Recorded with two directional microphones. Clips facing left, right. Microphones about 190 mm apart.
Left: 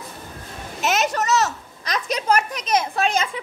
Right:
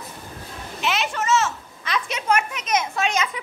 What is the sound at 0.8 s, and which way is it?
A child's voice, 45° left (ahead or behind).